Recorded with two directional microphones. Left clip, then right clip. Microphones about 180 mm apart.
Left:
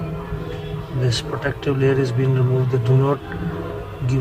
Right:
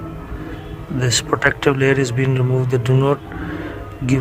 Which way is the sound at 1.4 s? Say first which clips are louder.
Right 5 dB; 75° right (ahead or behind).